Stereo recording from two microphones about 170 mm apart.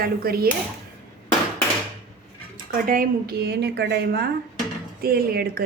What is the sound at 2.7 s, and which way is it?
A woman's voice, 55° right (ahead or behind).